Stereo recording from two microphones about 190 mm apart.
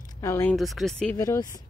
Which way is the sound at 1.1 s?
20° left (ahead or behind).